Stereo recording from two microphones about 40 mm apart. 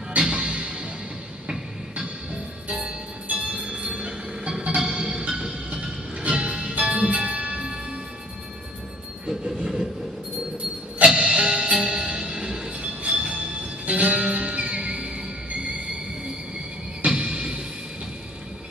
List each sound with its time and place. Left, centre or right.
0.2 s music: right
2.7 s music: right
9.2 s train: centre
11.1 s music: right
17.0 s music: right